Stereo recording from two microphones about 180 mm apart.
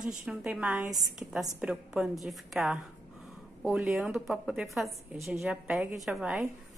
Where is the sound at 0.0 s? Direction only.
5° right (ahead or behind).